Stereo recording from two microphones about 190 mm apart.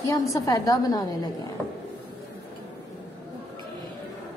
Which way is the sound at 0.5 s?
20° left (ahead or behind).